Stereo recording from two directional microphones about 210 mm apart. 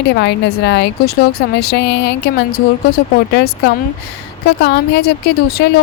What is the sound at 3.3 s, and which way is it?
A woman's voice, 50° left (ahead or behind).